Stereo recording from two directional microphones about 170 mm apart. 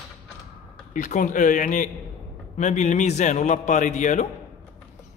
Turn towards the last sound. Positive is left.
turn(degrees=45)  # may be behind; listen again after turning